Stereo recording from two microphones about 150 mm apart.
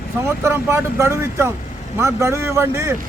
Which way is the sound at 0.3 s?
15° right (ahead or behind).